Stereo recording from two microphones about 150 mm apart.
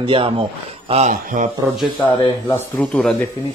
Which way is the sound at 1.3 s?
70° right (ahead or behind).